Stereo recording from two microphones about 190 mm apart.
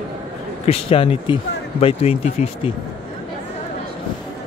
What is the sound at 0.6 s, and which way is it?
Speech, 30° left (ahead or behind).